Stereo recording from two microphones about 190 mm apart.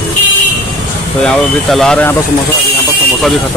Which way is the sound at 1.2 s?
Centre (ahead or behind).